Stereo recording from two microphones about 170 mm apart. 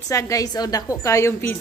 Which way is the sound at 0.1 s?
20° left (ahead or behind).